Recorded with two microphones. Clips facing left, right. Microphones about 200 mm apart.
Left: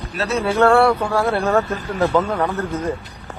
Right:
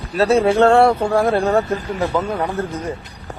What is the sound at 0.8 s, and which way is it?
Speech, 45° right (ahead or behind).